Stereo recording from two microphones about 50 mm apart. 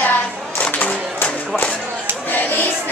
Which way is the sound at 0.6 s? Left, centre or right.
Left.